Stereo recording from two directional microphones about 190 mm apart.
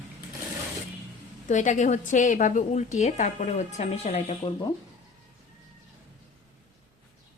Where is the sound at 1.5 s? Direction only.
40° left (ahead or behind).